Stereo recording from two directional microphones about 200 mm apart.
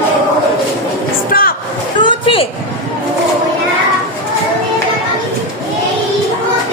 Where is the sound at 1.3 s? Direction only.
45° left (ahead or behind).